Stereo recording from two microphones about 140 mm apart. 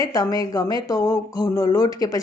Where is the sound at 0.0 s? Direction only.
25° left (ahead or behind).